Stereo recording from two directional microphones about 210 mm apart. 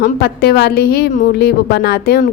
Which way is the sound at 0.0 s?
50° left (ahead or behind).